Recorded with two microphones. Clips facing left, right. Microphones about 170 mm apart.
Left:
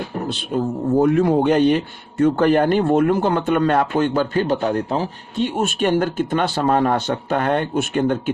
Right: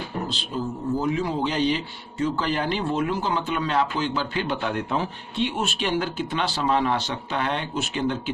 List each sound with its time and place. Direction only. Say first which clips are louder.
0.3 s a man's voice: left 7 dB; 60° left (ahead or behind)